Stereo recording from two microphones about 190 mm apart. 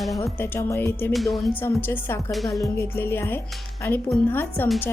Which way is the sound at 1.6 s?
10° left (ahead or behind).